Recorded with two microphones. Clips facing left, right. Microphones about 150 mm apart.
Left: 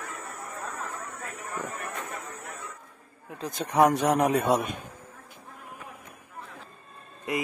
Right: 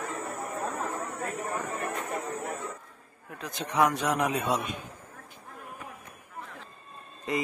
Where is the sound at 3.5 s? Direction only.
45° left (ahead or behind).